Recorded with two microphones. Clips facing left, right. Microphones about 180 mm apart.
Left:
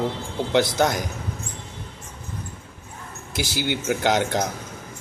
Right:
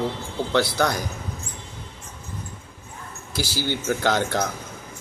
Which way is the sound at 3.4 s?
20° left (ahead or behind).